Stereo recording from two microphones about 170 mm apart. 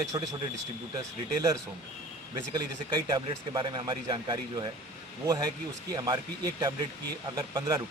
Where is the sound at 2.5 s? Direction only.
25° right (ahead or behind).